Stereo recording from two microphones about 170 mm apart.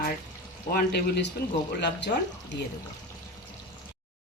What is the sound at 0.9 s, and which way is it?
Speech, 90° left.